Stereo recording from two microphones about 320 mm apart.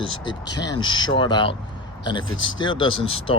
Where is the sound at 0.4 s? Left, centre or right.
Left.